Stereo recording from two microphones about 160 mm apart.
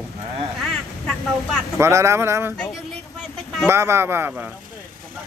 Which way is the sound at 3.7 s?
15° right (ahead or behind).